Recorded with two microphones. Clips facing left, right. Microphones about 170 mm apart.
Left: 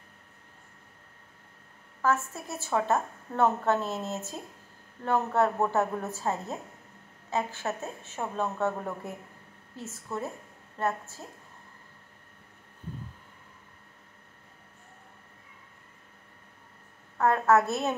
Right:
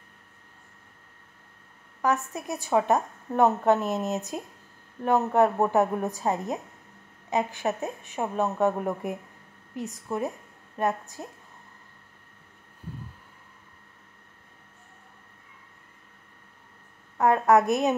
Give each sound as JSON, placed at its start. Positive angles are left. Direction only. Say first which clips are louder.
{"t": 2.0, "sound": "a woman's voice", "louder": "right 2 dB", "side_deg": -15}
{"t": 17.2, "sound": "a woman's voice", "louder": "right 3 dB", "side_deg": -15}